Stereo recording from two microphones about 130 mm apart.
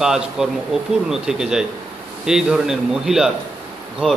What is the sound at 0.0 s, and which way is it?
A man's voice, 5° right (ahead or behind).